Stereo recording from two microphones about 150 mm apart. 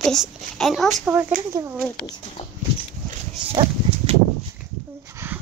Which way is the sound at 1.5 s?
20° right (ahead or behind).